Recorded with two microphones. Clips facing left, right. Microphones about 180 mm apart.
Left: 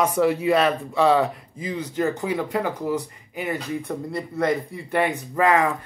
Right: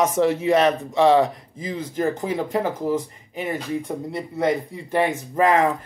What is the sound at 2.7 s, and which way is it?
Speech, 50° right (ahead or behind).